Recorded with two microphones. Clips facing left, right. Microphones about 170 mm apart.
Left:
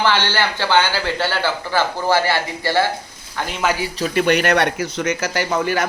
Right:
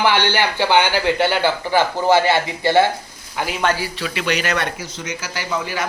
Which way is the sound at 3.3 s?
5° right (ahead or behind).